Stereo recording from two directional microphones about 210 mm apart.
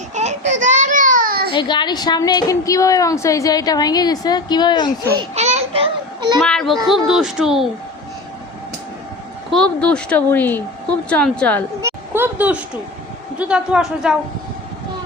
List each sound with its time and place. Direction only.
0.1 s baby cry: 35° right (ahead or behind)
1.5 s a woman's voice: 20° left (ahead or behind)
5.1 s a sound: 30° right (ahead or behind)
6.4 s speech: centre (ahead or behind)
9.5 s speech: 5° left (ahead or behind)
11.8 s a sound: 10° right (ahead or behind)
13.4 s speech: 5° right (ahead or behind)